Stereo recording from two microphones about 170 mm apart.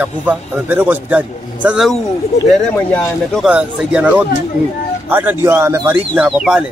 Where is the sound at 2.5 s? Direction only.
5° left (ahead or behind).